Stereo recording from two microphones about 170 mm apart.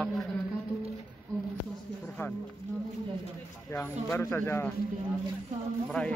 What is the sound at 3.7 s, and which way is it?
Speech, 15° left (ahead or behind).